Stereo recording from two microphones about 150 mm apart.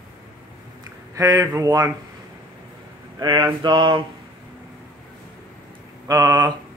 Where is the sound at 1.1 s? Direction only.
25° right (ahead or behind).